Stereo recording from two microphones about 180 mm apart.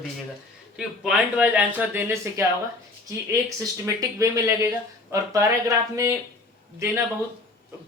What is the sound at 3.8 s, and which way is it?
Speech, 15° right (ahead or behind).